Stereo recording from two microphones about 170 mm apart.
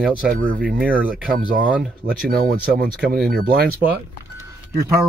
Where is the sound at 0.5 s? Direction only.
5° right (ahead or behind).